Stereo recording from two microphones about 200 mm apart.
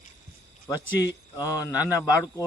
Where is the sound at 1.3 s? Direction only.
15° left (ahead or behind).